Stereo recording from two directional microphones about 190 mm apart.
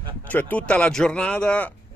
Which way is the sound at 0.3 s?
10° left (ahead or behind).